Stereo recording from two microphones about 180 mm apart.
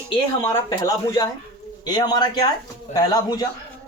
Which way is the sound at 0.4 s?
15° left (ahead or behind).